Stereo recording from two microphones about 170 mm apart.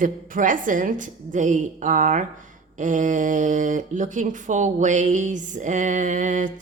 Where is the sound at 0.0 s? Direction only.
50° right (ahead or behind).